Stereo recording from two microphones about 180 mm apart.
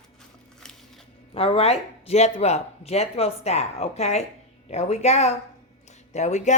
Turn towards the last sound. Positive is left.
turn(degrees=40)  # may be behind; listen again after turning